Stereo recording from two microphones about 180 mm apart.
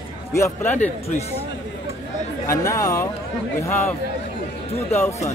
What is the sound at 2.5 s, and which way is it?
Speech, 20° left (ahead or behind).